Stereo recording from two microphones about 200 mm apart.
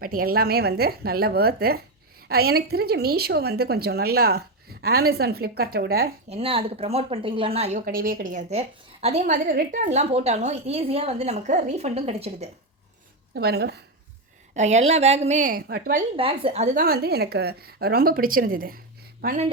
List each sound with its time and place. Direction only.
0.0 s a woman's voice: 45° right (ahead or behind)
6.3 s speech: 30° right (ahead or behind)
7.9 s a woman's voice: 45° right (ahead or behind); by 12.5 s 30° right (ahead or behind)
13.3 s a woman's voice: 55° right (ahead or behind)
14.5 s a woman's voice: 35° right (ahead or behind)
16.1 s speech: 25° right (ahead or behind)
16.8 s a woman's voice: 50° right (ahead or behind)